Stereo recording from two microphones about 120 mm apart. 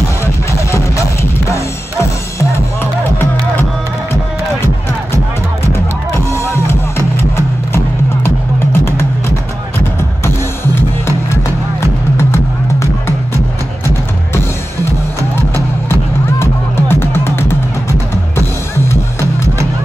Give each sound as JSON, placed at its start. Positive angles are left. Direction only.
{"t": 0.2, "sound": "music", "side_deg": 25}
{"t": 2.8, "sound": "music", "side_deg": 15}
{"t": 6.3, "sound": "music", "side_deg": 20}
{"t": 15.9, "sound": "music", "side_deg": 20}